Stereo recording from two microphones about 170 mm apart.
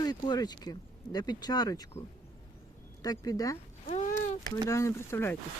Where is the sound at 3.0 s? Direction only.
20° left (ahead or behind).